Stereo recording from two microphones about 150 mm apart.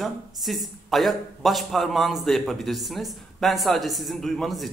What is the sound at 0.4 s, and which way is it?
A man's voice, centre (ahead or behind).